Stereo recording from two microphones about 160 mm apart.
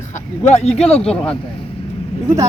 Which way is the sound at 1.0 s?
5° left (ahead or behind).